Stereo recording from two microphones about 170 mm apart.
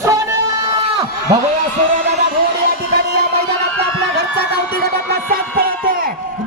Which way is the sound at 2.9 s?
65° right (ahead or behind).